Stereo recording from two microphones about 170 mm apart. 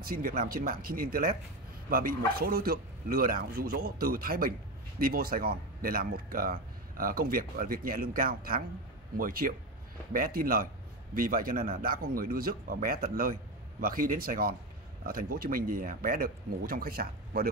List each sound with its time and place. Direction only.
0.0 s a man's voice: 60° right (ahead or behind)